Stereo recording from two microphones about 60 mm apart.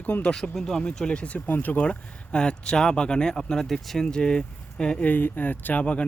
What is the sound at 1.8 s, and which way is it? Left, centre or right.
Speech, centre.